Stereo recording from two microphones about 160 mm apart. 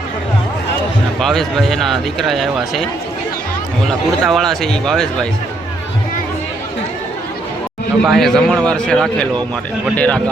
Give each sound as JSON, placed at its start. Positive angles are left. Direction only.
{"t": 1.2, "sound": "speech", "side_deg": 0}
{"t": 4.2, "sound": "speech", "side_deg": 0}
{"t": 8.0, "sound": "speech", "side_deg": 0}